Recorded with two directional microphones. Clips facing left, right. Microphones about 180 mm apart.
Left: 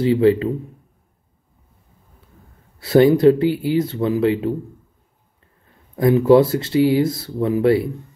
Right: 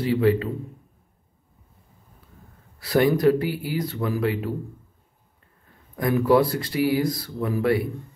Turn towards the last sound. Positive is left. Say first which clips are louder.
# left 6 dB
turn(degrees=25)  # may be behind; listen again after turning